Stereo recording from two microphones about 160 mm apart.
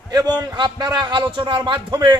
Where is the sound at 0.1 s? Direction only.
25° right (ahead or behind).